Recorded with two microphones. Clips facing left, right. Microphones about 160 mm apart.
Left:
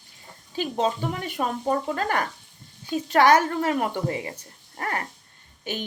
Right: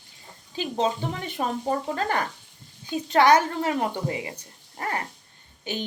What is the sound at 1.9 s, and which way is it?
Speech, 30° right (ahead or behind).